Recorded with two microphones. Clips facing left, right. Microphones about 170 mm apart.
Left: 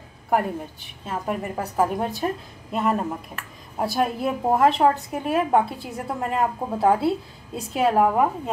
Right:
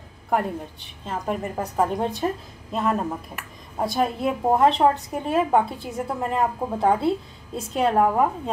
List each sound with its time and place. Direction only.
1.0 s a woman's voice: 5° left (ahead or behind)